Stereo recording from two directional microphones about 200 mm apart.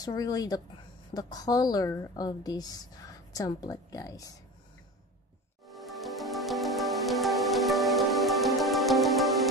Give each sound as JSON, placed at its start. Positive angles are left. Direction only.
{"t": 0.0, "sound": "a woman's voice", "side_deg": 20}
{"t": 5.7, "sound": "music", "side_deg": 0}